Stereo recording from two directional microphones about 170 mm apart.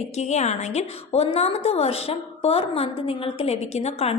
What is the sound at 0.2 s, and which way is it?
A woman's voice, 40° left (ahead or behind).